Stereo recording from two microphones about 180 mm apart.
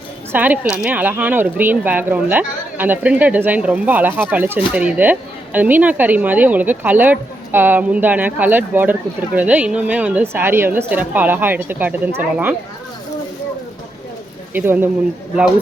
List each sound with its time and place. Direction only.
0.3 s speech: 10° right (ahead or behind)
14.5 s speech: 10° right (ahead or behind)